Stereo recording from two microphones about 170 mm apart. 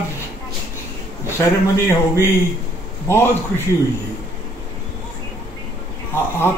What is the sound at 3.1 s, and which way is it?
Speech, 15° left (ahead or behind).